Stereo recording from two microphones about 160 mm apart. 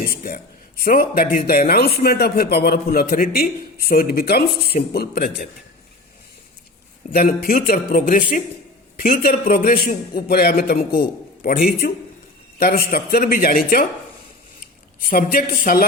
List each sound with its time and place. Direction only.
0.0 s speech: 65° left (ahead or behind)
7.1 s speech: 65° left (ahead or behind)
15.1 s speech: 65° left (ahead or behind)